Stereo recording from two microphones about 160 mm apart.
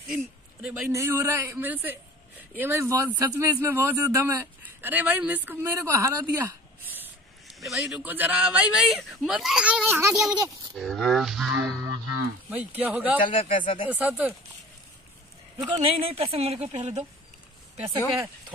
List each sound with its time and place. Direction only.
0.1 s speech: 5° right (ahead or behind)
0.9 s a woman's voice: 15° right (ahead or behind)
7.4 s a man's voice: centre (ahead or behind)
13.2 s speech: 30° left (ahead or behind)
13.8 s a woman's voice: 10° right (ahead or behind)
15.7 s speech: 35° right (ahead or behind)
17.8 s speech: 20° right (ahead or behind)